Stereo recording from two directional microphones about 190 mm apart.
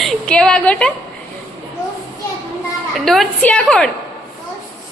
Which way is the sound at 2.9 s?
Centre (ahead or behind).